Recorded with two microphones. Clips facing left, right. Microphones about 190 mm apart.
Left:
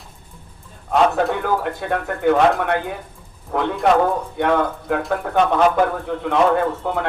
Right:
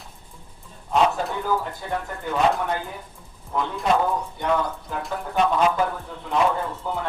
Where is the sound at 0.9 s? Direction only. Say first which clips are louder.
Left 5 dB; 65° left (ahead or behind).